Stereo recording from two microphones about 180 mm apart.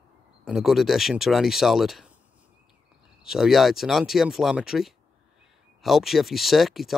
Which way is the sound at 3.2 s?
Centre (ahead or behind).